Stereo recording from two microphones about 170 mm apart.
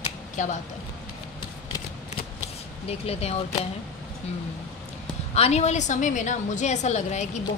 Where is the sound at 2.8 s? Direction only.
35° left (ahead or behind).